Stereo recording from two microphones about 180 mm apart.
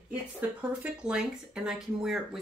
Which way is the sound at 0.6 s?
5° right (ahead or behind).